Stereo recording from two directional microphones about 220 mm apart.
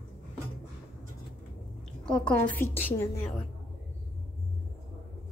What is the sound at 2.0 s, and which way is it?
A woman's voice, 5° left (ahead or behind).